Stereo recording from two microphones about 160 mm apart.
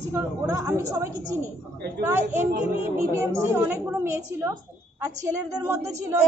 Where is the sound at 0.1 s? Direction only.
20° right (ahead or behind).